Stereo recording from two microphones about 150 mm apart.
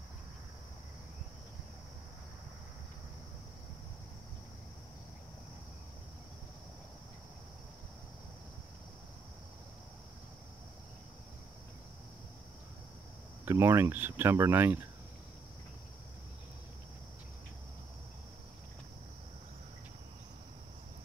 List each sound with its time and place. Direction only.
13.5 s speech: 20° right (ahead or behind)